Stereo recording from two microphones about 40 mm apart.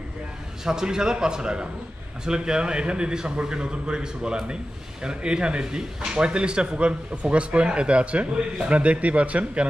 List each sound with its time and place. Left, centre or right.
0.7 s a man's voice: centre; by 9.7 s right